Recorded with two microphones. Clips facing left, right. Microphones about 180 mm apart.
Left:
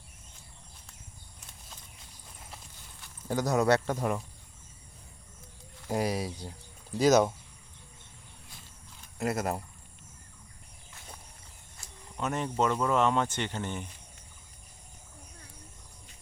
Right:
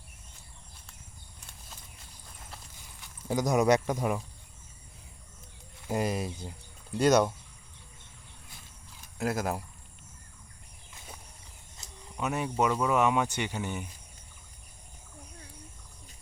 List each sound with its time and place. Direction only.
3.0 s speech: 10° right (ahead or behind)
5.9 s speech: 5° left (ahead or behind)
9.1 s speech: centre (ahead or behind)
11.8 s cricket: 20° right (ahead or behind)
12.1 s speech: 5° right (ahead or behind)